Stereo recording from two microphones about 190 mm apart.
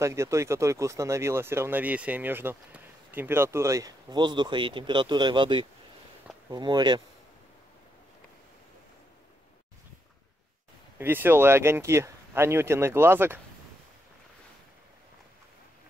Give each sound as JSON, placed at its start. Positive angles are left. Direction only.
{"t": 0.0, "sound": "speech", "side_deg": -15}
{"t": 11.0, "sound": "speech", "side_deg": -10}